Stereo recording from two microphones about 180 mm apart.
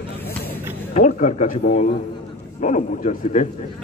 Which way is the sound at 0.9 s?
40° left (ahead or behind).